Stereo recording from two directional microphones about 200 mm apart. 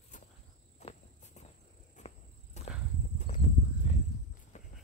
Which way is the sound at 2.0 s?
35° left (ahead or behind).